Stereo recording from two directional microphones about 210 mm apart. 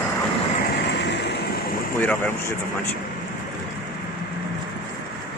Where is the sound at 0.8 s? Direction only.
55° left (ahead or behind).